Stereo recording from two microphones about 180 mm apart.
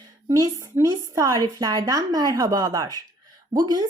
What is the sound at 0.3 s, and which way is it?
Speech, 20° right (ahead or behind).